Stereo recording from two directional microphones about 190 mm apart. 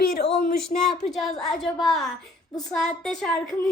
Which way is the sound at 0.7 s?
40° left (ahead or behind).